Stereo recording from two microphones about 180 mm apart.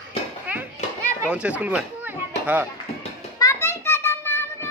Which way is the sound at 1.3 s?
5° right (ahead or behind).